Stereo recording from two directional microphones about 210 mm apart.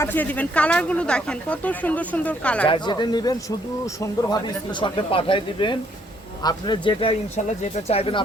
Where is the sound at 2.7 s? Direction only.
20° left (ahead or behind).